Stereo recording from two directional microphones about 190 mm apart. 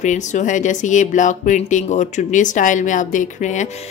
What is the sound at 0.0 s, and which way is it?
Speech, 40° left (ahead or behind).